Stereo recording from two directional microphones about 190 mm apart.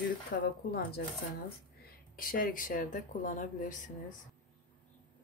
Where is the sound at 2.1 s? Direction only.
45° left (ahead or behind).